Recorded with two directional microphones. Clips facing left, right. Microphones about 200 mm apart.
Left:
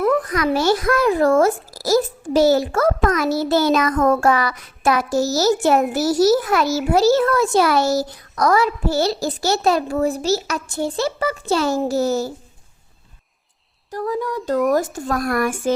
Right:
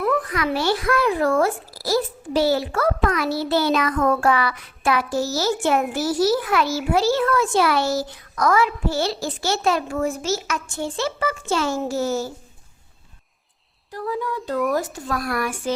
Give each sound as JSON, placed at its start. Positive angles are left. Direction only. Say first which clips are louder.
{"t": 0.0, "sound": "a child's voice", "louder": "left 4 dB", "side_deg": 40}
{"t": 13.9, "sound": "speech", "louder": "left 3 dB", "side_deg": 45}